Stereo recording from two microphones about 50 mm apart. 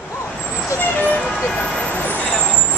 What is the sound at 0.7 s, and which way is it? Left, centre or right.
Vehicle, left.